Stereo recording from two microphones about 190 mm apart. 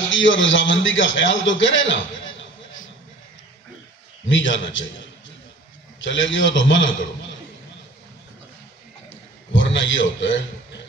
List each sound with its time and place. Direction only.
0.1 s a man's voice: 80° left
4.3 s a man's voice: 80° left
5.9 s a man's voice: 80° left
9.5 s a man's voice: 80° left